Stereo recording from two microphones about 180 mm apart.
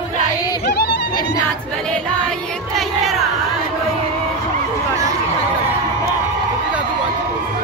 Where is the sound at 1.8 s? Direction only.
5° left (ahead or behind).